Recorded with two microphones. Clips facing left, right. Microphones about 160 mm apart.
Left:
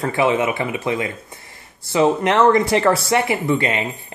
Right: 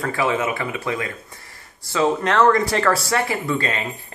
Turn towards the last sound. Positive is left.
turn(degrees=20)  # may be behind; listen again after turning